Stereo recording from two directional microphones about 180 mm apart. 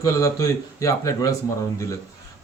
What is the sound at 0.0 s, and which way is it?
Speech, 20° left (ahead or behind).